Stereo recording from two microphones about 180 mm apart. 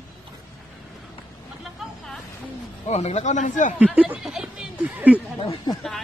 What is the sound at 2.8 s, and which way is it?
Speech, 35° left (ahead or behind).